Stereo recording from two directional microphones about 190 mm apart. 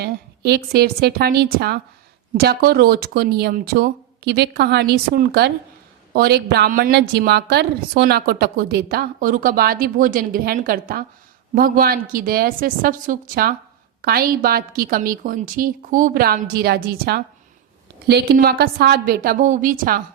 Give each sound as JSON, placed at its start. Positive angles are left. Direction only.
{"t": 0.0, "sound": "a woman's voice", "side_deg": -55}